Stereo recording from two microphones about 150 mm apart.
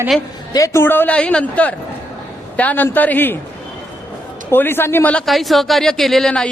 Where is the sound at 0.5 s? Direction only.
20° left (ahead or behind).